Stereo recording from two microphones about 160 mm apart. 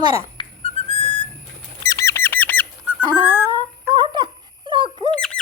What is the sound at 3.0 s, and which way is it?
Dog, 30° right (ahead or behind).